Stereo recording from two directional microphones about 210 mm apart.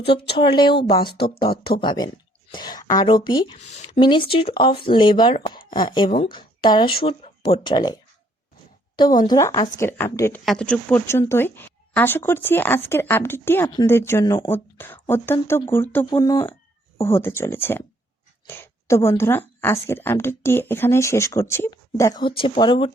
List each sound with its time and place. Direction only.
0.3 s speech: 20° left (ahead or behind)
1.5 s speech: 45° left (ahead or behind)
1.8 s speech: 20° left (ahead or behind)
9.2 s speech: 15° left (ahead or behind)